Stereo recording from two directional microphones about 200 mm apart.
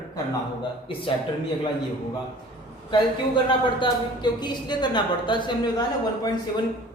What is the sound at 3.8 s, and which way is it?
A woman's voice, 20° left (ahead or behind).